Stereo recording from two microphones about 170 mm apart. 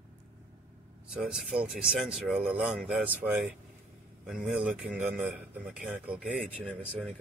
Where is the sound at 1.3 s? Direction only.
5° right (ahead or behind).